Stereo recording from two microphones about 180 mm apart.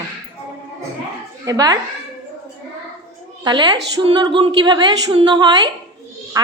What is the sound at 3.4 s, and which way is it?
A woman's voice, 25° right (ahead or behind).